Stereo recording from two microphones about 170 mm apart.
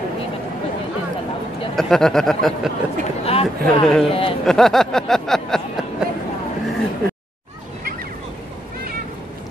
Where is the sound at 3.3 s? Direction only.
35° left (ahead or behind).